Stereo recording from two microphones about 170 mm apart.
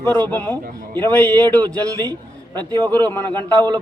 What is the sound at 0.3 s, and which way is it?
A man's voice, 10° left (ahead or behind).